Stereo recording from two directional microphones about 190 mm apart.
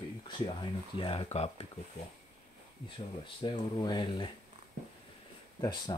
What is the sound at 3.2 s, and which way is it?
Speech, 25° left (ahead or behind).